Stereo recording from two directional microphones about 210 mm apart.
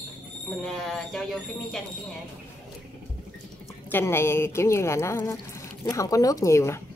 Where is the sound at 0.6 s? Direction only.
Centre (ahead or behind).